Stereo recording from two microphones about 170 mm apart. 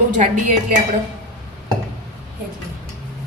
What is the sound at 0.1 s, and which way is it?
Speech, 45° right (ahead or behind).